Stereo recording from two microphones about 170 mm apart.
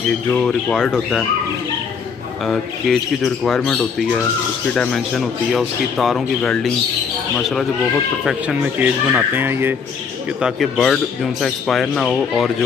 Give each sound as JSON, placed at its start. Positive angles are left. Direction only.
{"t": 0.3, "sound": "a man's voice", "side_deg": 5}
{"t": 2.4, "sound": "a man's voice", "side_deg": 0}
{"t": 8.3, "sound": "speech", "side_deg": -5}
{"t": 10.4, "sound": "a man's voice", "side_deg": 0}